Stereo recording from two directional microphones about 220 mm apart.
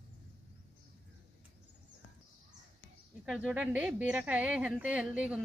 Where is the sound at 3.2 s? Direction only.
5° right (ahead or behind).